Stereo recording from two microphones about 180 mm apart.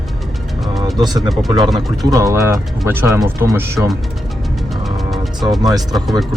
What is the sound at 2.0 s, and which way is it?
Speech, 15° right (ahead or behind).